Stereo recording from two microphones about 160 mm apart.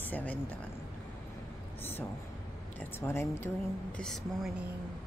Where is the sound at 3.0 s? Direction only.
15° left (ahead or behind).